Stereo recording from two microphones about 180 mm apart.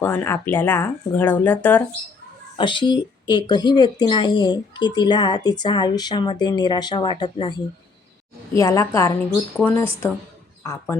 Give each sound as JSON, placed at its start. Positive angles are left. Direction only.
{"t": 0.0, "sound": "speech", "side_deg": 10}
{"t": 2.6, "sound": "speech", "side_deg": 25}
{"t": 8.5, "sound": "speech", "side_deg": 15}